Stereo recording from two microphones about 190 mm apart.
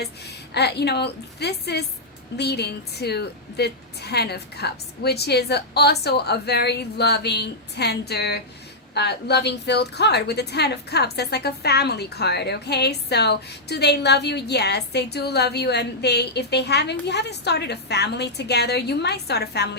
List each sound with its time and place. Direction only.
0.0 s a woman's voice: 60° left (ahead or behind)